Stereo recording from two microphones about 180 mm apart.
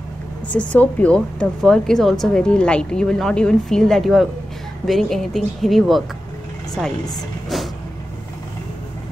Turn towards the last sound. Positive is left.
turn(degrees=0)  # may be behind; listen again after turning